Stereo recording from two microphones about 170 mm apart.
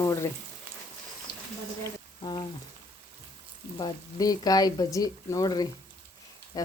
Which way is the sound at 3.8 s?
20° left (ahead or behind).